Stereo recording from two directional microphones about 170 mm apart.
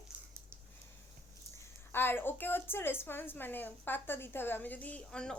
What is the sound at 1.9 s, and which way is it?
A woman's voice, 15° left (ahead or behind).